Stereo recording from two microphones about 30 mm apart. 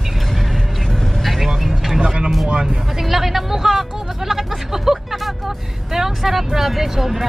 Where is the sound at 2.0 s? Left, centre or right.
Right.